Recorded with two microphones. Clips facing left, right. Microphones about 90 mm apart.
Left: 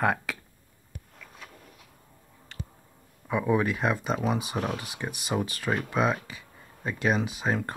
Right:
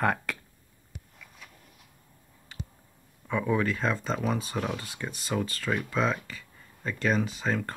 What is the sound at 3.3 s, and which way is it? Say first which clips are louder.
Speech: left 2 dB; 20° left (ahead or behind).